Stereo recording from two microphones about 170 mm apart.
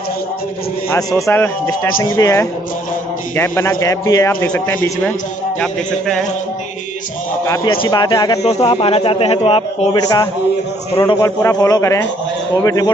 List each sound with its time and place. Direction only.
0.8 s speech: 20° left (ahead or behind)
5.6 s a man's voice: 5° left (ahead or behind)
7.4 s a man's voice: 15° left (ahead or behind)
8.5 s a man's voice: 35° left (ahead or behind)
10.0 s a man's voice: 20° left (ahead or behind)